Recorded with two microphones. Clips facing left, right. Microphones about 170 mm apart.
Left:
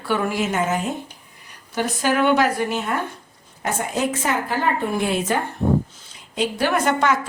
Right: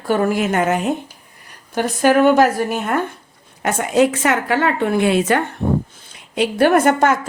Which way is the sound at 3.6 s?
75° right (ahead or behind).